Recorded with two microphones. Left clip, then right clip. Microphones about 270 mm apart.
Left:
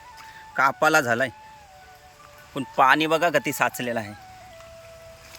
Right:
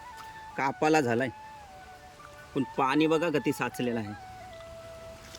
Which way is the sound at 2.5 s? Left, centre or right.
Centre.